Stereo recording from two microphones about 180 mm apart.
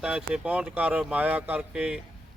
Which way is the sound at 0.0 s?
5° right (ahead or behind).